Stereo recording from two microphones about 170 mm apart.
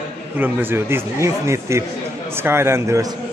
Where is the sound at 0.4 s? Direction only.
10° right (ahead or behind).